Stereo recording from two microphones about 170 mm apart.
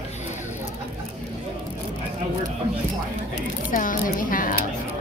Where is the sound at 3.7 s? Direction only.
55° left (ahead or behind).